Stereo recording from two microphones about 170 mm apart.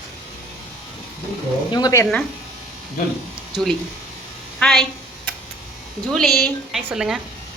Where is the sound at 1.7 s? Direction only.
20° left (ahead or behind).